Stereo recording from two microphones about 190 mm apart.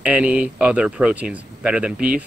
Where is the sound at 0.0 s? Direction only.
5° right (ahead or behind).